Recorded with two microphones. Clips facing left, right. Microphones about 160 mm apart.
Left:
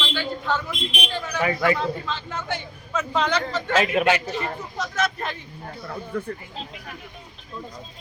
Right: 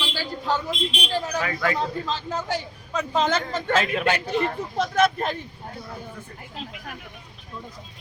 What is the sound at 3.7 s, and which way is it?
Speech, 10° left (ahead or behind).